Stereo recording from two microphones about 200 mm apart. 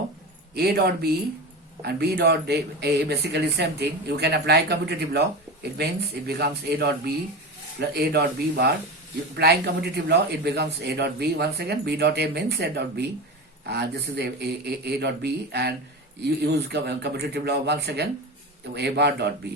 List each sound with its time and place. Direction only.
0.5 s a man's voice: 55° right (ahead or behind)